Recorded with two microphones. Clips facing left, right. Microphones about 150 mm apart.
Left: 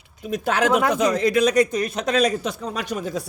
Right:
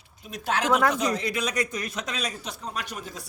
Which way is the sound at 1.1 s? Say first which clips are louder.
Left 10 dB; 40° left (ahead or behind).